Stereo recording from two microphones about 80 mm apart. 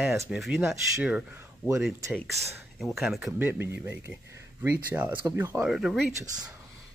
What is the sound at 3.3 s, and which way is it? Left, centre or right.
Speech, right.